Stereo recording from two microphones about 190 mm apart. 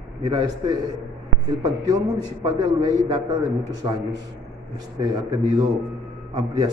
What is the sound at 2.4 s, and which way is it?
A man's voice, 20° right (ahead or behind).